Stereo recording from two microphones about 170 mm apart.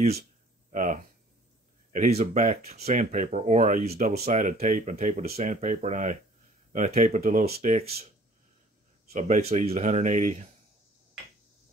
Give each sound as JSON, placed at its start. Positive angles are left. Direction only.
{"t": 0.7, "sound": "a sound", "side_deg": -50}
{"t": 1.9, "sound": "speech", "side_deg": -40}
{"t": 4.3, "sound": "speech", "side_deg": -50}
{"t": 9.1, "sound": "speech", "side_deg": -40}